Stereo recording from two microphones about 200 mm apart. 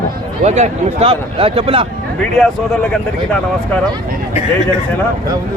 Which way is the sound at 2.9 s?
5° left (ahead or behind).